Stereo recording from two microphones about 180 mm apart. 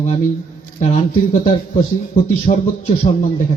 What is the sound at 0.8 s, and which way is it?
A man's voice, 40° left (ahead or behind).